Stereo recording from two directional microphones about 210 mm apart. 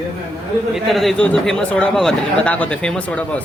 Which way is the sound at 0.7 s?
Centre (ahead or behind).